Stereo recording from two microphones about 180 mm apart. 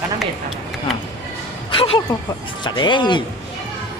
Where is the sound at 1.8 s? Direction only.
30° left (ahead or behind).